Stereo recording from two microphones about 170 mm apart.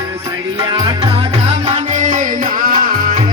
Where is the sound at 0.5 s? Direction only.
25° right (ahead or behind); by 3.3 s 50° right (ahead or behind).